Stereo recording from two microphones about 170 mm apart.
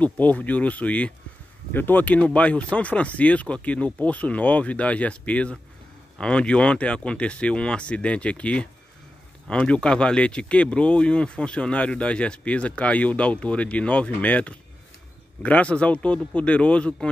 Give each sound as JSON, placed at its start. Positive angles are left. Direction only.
{"t": 0.0, "sound": "speech", "side_deg": 10}